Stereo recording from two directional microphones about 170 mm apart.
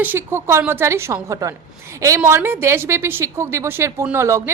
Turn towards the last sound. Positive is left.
turn(degrees=-15)  # may be behind; listen again after turning